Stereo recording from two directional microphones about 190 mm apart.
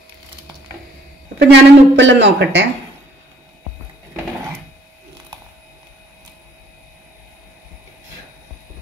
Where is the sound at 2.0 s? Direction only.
70° right (ahead or behind).